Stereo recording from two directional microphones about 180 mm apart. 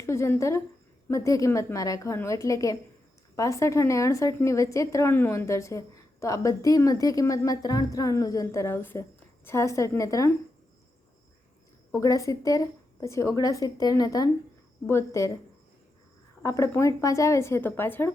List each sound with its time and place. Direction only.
0.0 s a woman's voice: 15° left (ahead or behind)
11.9 s a woman's voice: 15° left (ahead or behind)
16.4 s a woman's voice: 15° left (ahead or behind)